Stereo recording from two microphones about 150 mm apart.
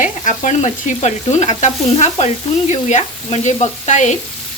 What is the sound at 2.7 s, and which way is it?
Frying, 50° left (ahead or behind).